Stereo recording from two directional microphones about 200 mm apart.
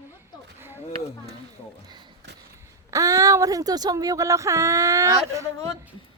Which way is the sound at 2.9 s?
15° right (ahead or behind).